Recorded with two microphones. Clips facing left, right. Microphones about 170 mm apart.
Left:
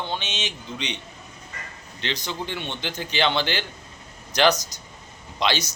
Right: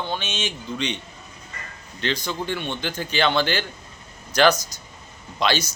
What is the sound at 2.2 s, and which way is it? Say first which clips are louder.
Speech: right 3 dB; 20° left (ahead or behind).